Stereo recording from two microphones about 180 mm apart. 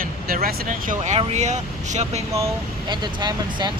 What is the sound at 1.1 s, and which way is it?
Speech, 40° right (ahead or behind).